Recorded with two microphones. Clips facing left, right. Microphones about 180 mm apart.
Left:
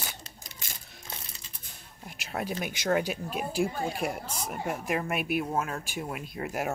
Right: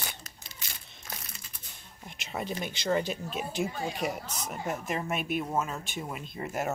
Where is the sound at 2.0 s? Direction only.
5° left (ahead or behind).